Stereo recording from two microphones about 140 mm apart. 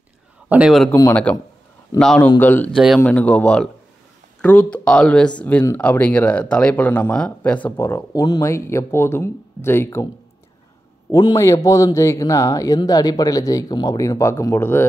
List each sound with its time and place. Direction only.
0.5 s a man's voice: 5° right (ahead or behind)
1.3 s a man's voice: 10° left (ahead or behind)
2.2 s speech: 15° left (ahead or behind)
2.7 s a man's voice: 5° right (ahead or behind)
3.0 s speech: 10° left (ahead or behind)
11.1 s a man's voice: 25° left (ahead or behind)